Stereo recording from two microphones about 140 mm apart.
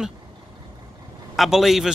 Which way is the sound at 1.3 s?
Centre (ahead or behind).